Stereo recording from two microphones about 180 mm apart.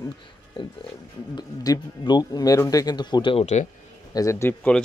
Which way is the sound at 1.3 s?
20° left (ahead or behind).